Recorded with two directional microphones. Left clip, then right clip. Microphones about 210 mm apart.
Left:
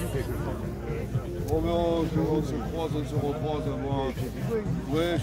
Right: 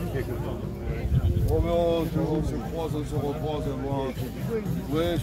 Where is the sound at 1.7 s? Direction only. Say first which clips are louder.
Right 3 dB; 25° right (ahead or behind).